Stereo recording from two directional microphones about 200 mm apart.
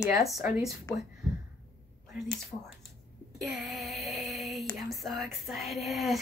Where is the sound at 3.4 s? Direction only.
Centre (ahead or behind).